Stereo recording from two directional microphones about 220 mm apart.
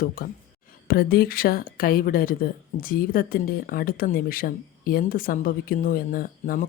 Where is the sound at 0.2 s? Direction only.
45° left (ahead or behind).